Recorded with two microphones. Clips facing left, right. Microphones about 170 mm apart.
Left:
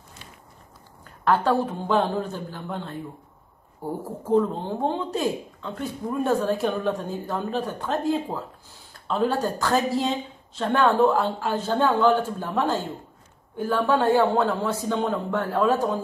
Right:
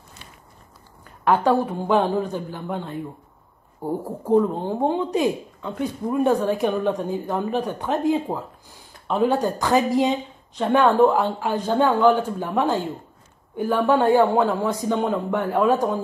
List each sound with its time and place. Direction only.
1.2 s speech: 15° right (ahead or behind)